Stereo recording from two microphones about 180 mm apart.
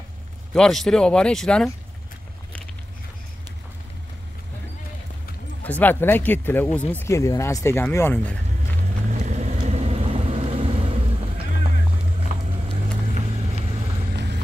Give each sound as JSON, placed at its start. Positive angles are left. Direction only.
{"t": 0.6, "sound": "speech", "side_deg": 5}
{"t": 5.6, "sound": "speech", "side_deg": 10}
{"t": 9.1, "sound": "vehicle", "side_deg": -40}
{"t": 14.1, "sound": "vehicle", "side_deg": -70}